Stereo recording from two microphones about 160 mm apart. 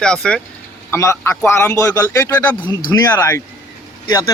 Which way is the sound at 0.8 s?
15° left (ahead or behind).